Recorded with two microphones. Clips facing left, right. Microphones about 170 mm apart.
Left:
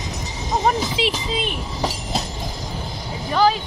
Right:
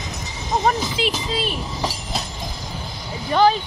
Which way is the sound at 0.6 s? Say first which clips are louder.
Left 1 dB; 20° left (ahead or behind).